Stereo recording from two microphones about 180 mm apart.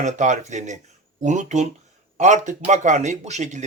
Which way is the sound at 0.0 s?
40° right (ahead or behind).